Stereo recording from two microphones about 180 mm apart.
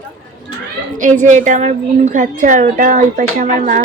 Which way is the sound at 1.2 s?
45° right (ahead or behind).